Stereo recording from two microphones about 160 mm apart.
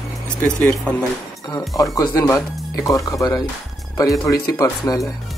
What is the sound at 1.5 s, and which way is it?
Speech, 20° left (ahead or behind).